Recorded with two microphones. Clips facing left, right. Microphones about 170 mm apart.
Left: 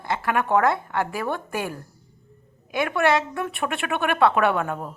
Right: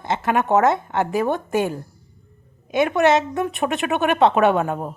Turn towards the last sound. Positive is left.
turn(degrees=-20)  # may be behind; listen again after turning